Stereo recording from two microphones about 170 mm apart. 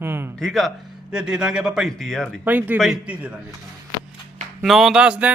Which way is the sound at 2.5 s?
10° right (ahead or behind).